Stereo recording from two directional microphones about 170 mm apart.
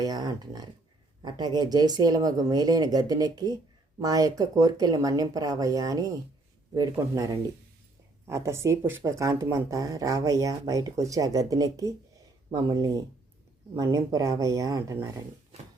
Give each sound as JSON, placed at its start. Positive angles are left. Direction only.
{"t": 0.0, "sound": "speech", "side_deg": -25}